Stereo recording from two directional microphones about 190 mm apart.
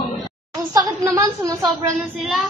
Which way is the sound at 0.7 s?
20° right (ahead or behind).